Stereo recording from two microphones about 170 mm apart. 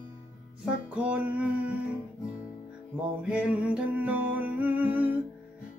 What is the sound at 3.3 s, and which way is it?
Music, 5° right (ahead or behind).